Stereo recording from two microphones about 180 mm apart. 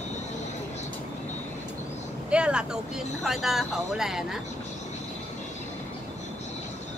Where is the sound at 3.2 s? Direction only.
Centre (ahead or behind).